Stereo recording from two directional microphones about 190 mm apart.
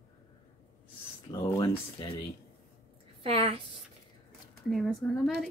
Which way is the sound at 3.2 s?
30° right (ahead or behind).